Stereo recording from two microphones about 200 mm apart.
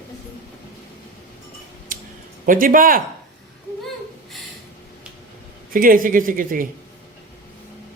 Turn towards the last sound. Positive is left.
turn(degrees=-45)  # may be behind; listen again after turning